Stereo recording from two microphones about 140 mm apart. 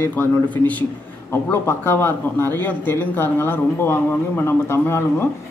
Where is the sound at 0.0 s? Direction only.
10° left (ahead or behind).